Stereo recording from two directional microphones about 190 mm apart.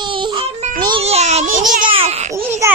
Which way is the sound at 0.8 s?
30° right (ahead or behind).